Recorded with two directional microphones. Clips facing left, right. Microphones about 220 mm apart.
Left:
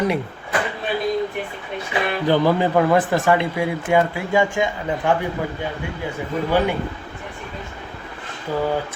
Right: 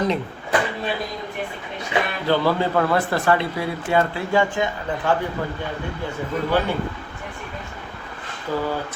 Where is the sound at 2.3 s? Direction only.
15° left (ahead or behind).